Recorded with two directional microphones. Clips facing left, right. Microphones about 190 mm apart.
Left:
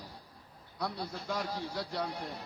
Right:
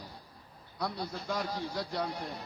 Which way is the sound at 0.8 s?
5° left (ahead or behind).